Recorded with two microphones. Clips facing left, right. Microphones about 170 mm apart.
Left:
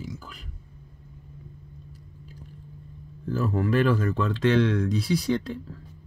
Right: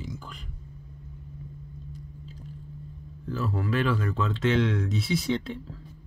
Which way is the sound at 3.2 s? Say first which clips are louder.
Left 4 dB; 45° left (ahead or behind).